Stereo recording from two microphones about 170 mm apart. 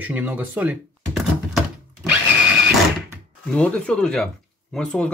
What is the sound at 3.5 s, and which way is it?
Speech, 5° left (ahead or behind).